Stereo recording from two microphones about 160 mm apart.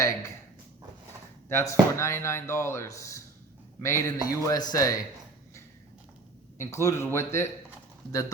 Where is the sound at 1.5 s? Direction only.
15° left (ahead or behind).